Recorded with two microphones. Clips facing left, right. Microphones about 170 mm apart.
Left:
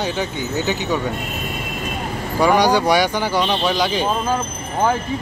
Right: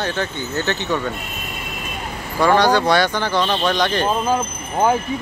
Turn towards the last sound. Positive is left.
turn(degrees=-15)  # may be behind; listen again after turning